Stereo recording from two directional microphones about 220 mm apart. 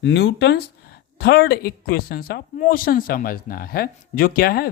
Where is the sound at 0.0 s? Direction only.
50° left (ahead or behind).